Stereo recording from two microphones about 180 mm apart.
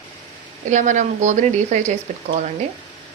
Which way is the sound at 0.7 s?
45° right (ahead or behind).